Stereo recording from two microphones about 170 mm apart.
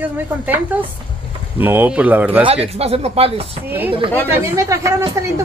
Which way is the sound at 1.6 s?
10° right (ahead or behind).